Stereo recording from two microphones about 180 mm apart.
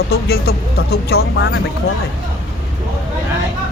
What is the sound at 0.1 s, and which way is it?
Speech, 60° left (ahead or behind).